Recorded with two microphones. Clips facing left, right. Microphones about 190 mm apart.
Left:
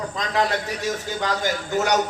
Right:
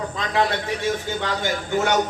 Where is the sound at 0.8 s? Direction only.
40° left (ahead or behind).